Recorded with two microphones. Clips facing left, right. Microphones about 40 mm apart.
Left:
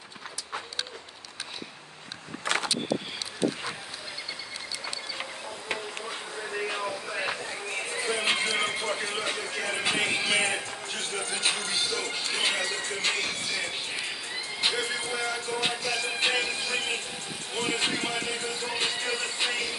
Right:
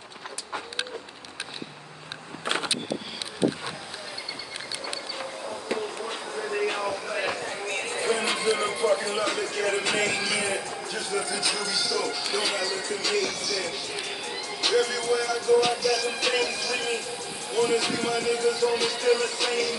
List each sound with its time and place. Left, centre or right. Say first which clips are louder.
6.6 s a sound: right 3 dB; right
8.2 s music: right 2 dB; left
9.8 s speech: right 1 dB; left
14.6 s music: right 5 dB; left